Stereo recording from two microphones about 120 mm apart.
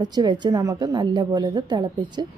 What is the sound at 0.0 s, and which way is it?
A woman's voice, 35° right (ahead or behind).